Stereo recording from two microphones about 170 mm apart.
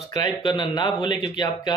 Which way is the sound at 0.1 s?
25° left (ahead or behind).